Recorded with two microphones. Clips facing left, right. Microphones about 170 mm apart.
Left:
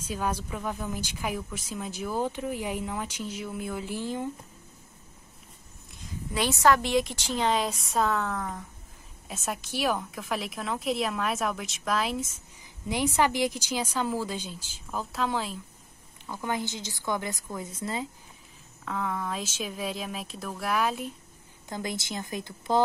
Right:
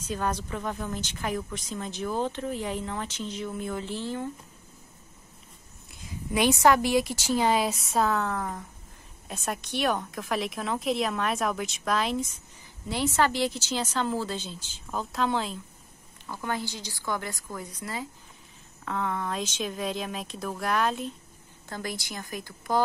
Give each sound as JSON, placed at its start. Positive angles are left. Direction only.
{"t": 0.0, "sound": "a woman's voice", "side_deg": 10}
{"t": 6.3, "sound": "speech", "side_deg": -15}
{"t": 12.8, "sound": "a woman's voice", "side_deg": 15}
{"t": 16.3, "sound": "a woman's voice", "side_deg": 15}
{"t": 18.9, "sound": "speech", "side_deg": 0}
{"t": 21.6, "sound": "a woman's voice", "side_deg": 20}